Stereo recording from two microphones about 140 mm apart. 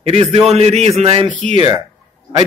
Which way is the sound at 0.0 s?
45° right (ahead or behind).